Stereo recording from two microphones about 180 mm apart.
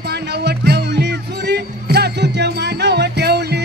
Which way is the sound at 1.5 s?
65° right (ahead or behind).